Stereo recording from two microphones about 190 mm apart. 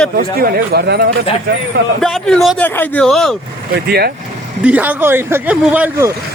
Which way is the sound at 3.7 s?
55° right (ahead or behind).